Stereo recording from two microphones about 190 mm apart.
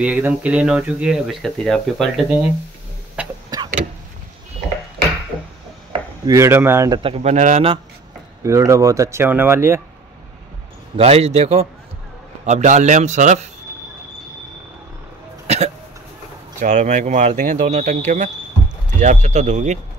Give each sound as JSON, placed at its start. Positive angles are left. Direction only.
{"t": 0.0, "sound": "speech", "side_deg": -5}
{"t": 3.4, "sound": "vehicle", "side_deg": -20}
{"t": 6.2, "sound": "speech", "side_deg": -15}
{"t": 7.0, "sound": "speech", "side_deg": -30}
{"t": 8.5, "sound": "speech", "side_deg": -15}
{"t": 11.0, "sound": "speech", "side_deg": -35}
{"t": 15.4, "sound": "hiccup", "side_deg": -35}
{"t": 16.5, "sound": "speech", "side_deg": -40}